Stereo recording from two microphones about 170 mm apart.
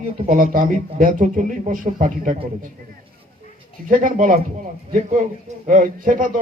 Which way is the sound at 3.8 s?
55° right (ahead or behind).